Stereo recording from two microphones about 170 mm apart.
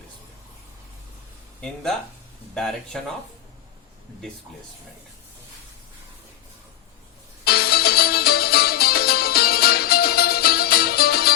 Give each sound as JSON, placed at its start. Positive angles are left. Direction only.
{"t": 1.6, "sound": "speech", "side_deg": 5}
{"t": 7.4, "sound": "music", "side_deg": 65}